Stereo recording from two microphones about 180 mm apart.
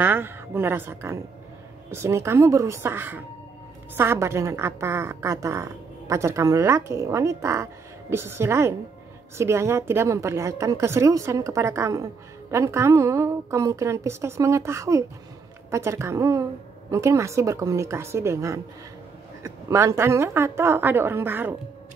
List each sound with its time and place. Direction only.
0.0 s a woman's voice: 10° right (ahead or behind)